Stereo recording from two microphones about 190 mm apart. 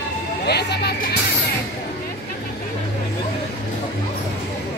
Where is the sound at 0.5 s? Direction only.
60° left (ahead or behind).